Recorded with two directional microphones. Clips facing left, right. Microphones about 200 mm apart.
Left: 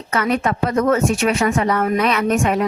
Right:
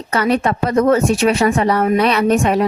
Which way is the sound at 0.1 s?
35° right (ahead or behind).